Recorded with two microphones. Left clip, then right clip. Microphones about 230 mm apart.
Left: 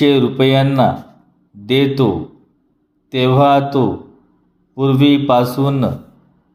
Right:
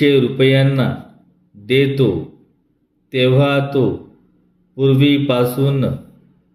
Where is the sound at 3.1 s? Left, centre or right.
Centre.